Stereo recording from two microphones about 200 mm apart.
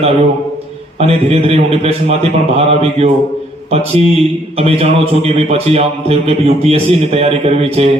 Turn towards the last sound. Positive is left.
turn(degrees=-30)  # may be behind; listen again after turning